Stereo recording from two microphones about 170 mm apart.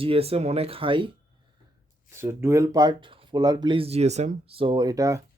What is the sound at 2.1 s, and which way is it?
Speech, 15° right (ahead or behind).